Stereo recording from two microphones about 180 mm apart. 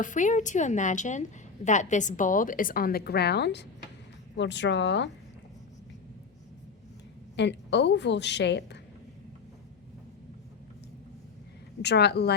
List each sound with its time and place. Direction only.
0.0 s a woman's voice: 45° left (ahead or behind); by 5.1 s 80° left
7.3 s a woman's voice: 75° left (ahead or behind)
11.8 s a woman's voice: 70° left (ahead or behind)